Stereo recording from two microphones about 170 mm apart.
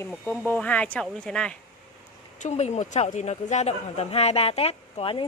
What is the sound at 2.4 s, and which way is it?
Speech, 40° left (ahead or behind).